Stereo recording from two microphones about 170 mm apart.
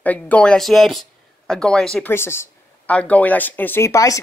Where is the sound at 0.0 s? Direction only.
10° left (ahead or behind).